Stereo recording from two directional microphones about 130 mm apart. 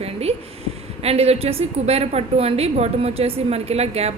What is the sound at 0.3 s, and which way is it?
A woman's voice, 50° right (ahead or behind).